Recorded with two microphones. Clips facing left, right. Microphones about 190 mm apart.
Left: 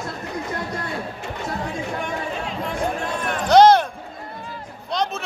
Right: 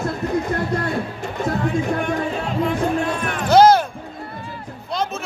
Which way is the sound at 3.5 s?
5° right (ahead or behind).